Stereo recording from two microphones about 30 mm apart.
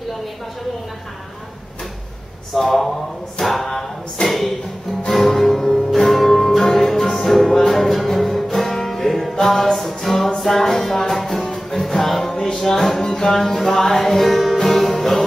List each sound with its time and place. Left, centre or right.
2.5 s speech: centre
3.4 s a capella: centre
5.1 s music: centre